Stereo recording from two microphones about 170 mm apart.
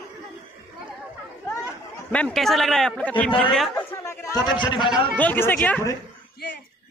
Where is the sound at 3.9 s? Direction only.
15° left (ahead or behind).